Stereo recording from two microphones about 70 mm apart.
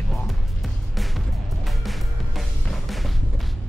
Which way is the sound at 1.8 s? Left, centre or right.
Centre.